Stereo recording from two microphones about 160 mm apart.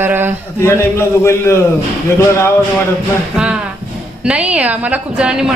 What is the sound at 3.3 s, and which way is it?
A woman's voice, 5° right (ahead or behind).